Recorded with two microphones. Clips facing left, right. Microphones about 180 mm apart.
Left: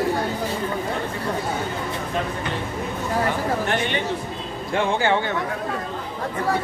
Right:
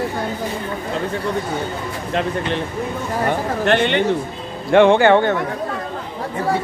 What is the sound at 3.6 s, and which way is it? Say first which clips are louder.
Speech: right 7 dB; 75° right (ahead or behind).